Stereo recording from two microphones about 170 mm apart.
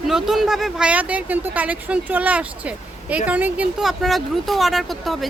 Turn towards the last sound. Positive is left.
turn(degrees=0)  # may be behind; listen again after turning